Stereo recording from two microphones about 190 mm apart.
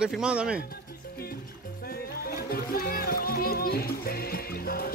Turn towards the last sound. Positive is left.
turn(degrees=50)  # may be behind; listen again after turning